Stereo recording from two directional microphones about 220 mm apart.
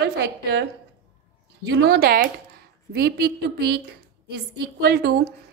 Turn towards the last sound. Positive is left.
turn(degrees=-45)  # may be behind; listen again after turning